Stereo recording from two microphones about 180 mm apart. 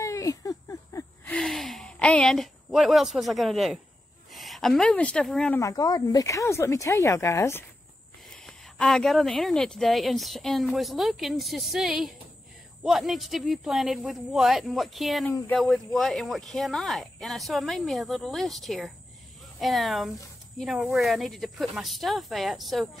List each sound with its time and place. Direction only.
0.0 s a sound: 20° left (ahead or behind); by 3.8 s centre (ahead or behind)
4.3 s speech: centre (ahead or behind)
5.6 s speech: 20° left (ahead or behind)
8.5 s speech: 5° left (ahead or behind)